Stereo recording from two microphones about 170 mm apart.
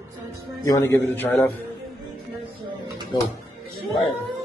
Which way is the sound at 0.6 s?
15° left (ahead or behind).